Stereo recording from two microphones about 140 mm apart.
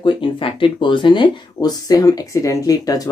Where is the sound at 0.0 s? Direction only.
40° left (ahead or behind).